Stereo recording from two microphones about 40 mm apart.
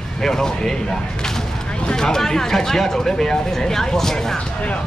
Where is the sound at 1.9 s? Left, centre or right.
Centre.